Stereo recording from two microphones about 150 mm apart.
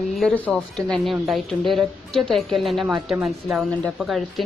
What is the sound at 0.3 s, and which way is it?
Speech, 5° left (ahead or behind).